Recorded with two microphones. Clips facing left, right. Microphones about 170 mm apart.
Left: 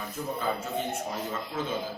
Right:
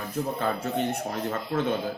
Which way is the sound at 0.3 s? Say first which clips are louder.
Right 2 dB; 65° right (ahead or behind).